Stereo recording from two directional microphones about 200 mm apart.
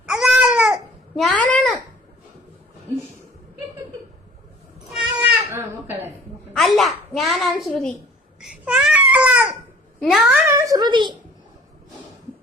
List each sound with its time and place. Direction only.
0.0 s babbling: 5° right (ahead or behind)
4.9 s cat: 5° right (ahead or behind)
6.6 s a child's voice: centre (ahead or behind)
8.4 s babbling: 5° right (ahead or behind)
10.0 s speech: centre (ahead or behind)
10.4 s a woman's voice: 15° right (ahead or behind)